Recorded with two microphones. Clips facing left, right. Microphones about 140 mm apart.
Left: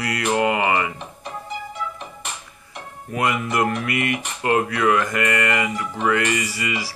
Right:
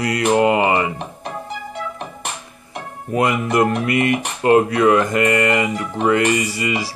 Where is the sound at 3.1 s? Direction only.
25° right (ahead or behind).